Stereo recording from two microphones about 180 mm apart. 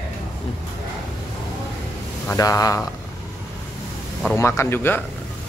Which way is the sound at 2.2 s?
20° left (ahead or behind).